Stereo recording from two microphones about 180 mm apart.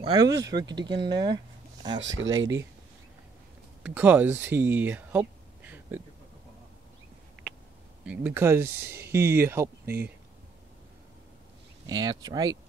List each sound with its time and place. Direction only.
0.0 s speech: 20° right (ahead or behind)
2.0 s speech: 90° right
3.8 s speech: 10° right (ahead or behind)
8.0 s speech: 10° right (ahead or behind)
11.9 s speech: 20° right (ahead or behind)